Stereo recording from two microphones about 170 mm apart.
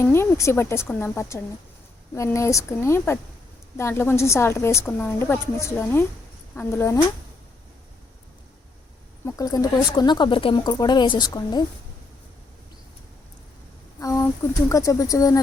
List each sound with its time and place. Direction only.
0.0 s a woman's voice: 15° left (ahead or behind)
9.2 s speech: 20° left (ahead or behind)
14.0 s speech: 20° left (ahead or behind)